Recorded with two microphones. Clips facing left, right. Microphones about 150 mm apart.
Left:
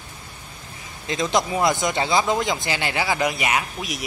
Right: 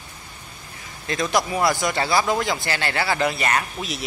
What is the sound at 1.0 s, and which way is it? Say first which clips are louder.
Speech: even; 20° left (ahead or behind).